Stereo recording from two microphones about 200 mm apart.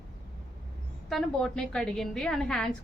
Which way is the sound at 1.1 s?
Centre (ahead or behind).